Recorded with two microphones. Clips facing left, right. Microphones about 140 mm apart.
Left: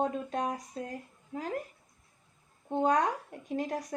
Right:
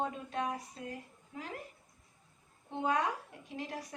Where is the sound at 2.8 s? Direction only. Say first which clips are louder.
Left 5 dB; 40° left (ahead or behind).